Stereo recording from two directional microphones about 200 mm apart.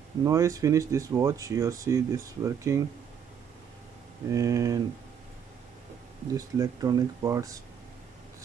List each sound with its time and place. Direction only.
0.2 s speech: 15° right (ahead or behind)
4.3 s speech: 15° right (ahead or behind)
6.3 s speech: 20° right (ahead or behind)